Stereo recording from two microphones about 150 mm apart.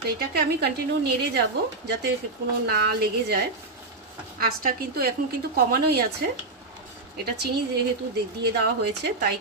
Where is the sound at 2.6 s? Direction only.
90° right.